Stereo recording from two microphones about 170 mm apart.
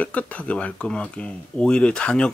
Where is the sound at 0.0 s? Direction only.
10° left (ahead or behind).